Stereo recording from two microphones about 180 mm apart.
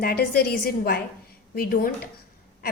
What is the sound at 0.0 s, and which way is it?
A woman's voice, 60° left (ahead or behind).